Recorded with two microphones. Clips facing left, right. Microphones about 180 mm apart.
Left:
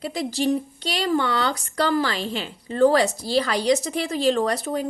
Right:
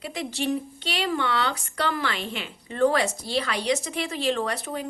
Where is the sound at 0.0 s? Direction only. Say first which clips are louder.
Left 5 dB; 35° left (ahead or behind).